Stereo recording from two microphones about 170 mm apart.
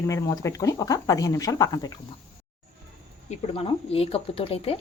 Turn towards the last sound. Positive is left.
turn(degrees=35)  # may be behind; listen again after turning